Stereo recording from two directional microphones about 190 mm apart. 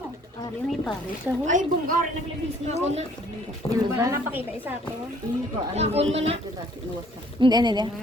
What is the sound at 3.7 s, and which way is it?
A woman's voice, 15° right (ahead or behind).